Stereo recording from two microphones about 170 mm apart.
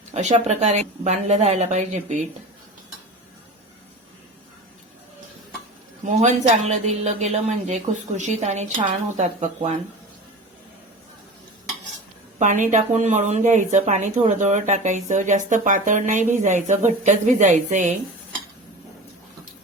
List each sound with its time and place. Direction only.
0.1 s a woman's voice: 40° right (ahead or behind)
6.1 s speech: 45° right (ahead or behind)
12.4 s speech: 50° right (ahead or behind)